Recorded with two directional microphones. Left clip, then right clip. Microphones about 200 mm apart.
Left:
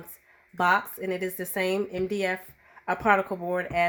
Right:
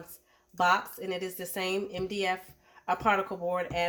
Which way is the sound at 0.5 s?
50° left (ahead or behind).